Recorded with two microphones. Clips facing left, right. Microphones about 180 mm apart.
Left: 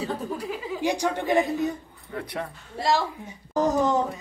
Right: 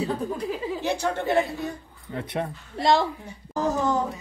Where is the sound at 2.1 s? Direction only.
25° right (ahead or behind).